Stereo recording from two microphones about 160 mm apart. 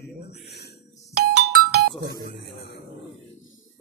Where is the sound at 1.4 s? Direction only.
75° right (ahead or behind).